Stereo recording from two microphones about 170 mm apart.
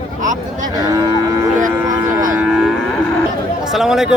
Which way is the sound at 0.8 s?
20° right (ahead or behind).